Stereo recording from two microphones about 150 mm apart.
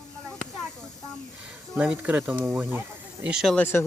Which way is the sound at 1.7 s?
10° right (ahead or behind).